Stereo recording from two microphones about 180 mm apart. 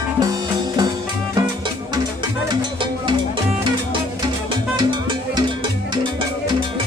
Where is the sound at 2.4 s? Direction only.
25° right (ahead or behind).